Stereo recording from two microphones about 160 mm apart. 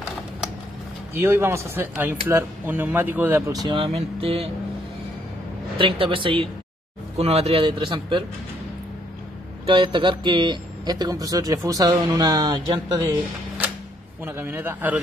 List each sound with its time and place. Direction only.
1.1 s speech: 15° right (ahead or behind); by 4.5 s 35° right (ahead or behind)
5.8 s speech: 35° right (ahead or behind)
9.7 s speech: 30° right (ahead or behind)
14.2 s speech: 15° right (ahead or behind)